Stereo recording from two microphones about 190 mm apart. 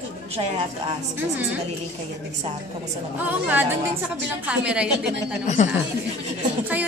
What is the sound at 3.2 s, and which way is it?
A woman's voice, 10° right (ahead or behind).